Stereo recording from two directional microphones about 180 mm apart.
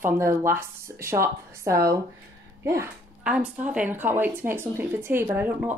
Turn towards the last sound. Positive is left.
turn(degrees=-10)  # may be behind; listen again after turning